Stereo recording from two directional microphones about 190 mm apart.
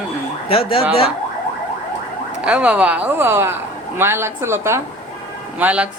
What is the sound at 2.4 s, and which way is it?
A woman's voice, 5° right (ahead or behind).